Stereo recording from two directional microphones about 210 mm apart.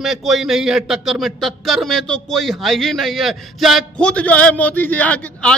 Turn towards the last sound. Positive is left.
turn(degrees=5)  # may be behind; listen again after turning